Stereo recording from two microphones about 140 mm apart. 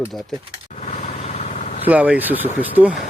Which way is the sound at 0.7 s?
60° left (ahead or behind).